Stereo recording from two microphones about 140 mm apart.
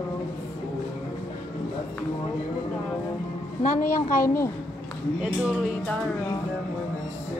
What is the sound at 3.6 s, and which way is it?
Speech, 70° left (ahead or behind).